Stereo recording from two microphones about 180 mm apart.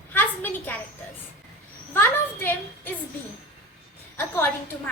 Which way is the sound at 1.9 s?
10° left (ahead or behind).